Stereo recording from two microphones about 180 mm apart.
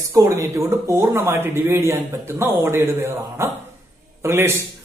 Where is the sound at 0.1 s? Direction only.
15° right (ahead or behind).